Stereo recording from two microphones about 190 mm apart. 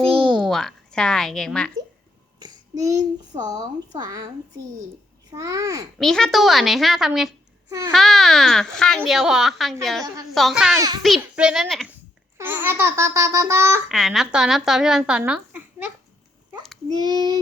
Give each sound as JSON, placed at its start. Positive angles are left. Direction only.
{"t": 0.0, "sound": "a sound", "side_deg": -30}
{"t": 0.3, "sound": "a woman's voice", "side_deg": 0}
{"t": 2.4, "sound": "child singing", "side_deg": -15}
{"t": 3.5, "sound": "a child's voice", "side_deg": -20}
{"t": 6.0, "sound": "speech", "side_deg": 0}
{"t": 7.7, "sound": "speech", "side_deg": -15}
{"t": 7.9, "sound": "speech", "side_deg": 0}
{"t": 10.8, "sound": "a child's voice", "side_deg": -20}
{"t": 11.0, "sound": "speech", "side_deg": -5}
{"t": 13.9, "sound": "speech", "side_deg": 0}
{"t": 17.0, "sound": "a child's voice", "side_deg": -20}